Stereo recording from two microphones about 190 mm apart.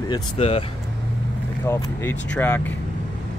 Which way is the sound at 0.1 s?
30° left (ahead or behind).